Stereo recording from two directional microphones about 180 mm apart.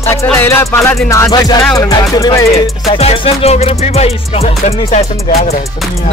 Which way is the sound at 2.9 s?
35° left (ahead or behind).